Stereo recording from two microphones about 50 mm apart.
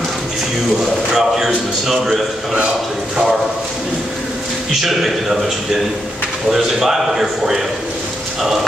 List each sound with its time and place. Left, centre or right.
1.1 s a man's voice: centre
4.8 s a man's voice: centre
6.5 s a man's voice: centre